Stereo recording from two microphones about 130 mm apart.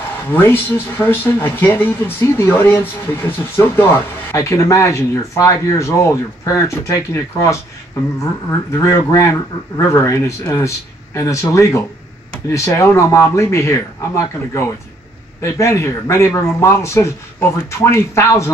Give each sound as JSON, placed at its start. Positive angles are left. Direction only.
{"t": 0.3, "sound": "speech", "side_deg": 15}
{"t": 8.5, "sound": "speech", "side_deg": 25}